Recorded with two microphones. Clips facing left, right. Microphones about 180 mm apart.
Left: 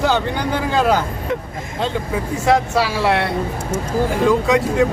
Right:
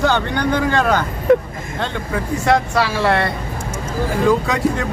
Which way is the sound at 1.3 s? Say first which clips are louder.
Right 12 dB; 50° right (ahead or behind).